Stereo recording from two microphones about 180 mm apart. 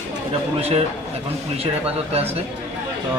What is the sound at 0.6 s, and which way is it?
Speech, 35° right (ahead or behind).